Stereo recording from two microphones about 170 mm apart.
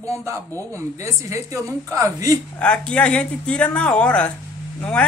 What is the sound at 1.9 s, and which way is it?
Speech, 20° right (ahead or behind).